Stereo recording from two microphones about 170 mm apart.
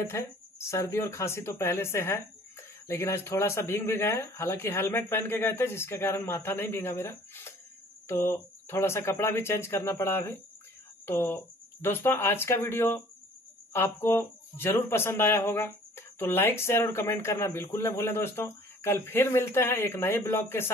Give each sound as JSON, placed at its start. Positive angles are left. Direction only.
{"t": 0.0, "sound": "speech", "side_deg": 15}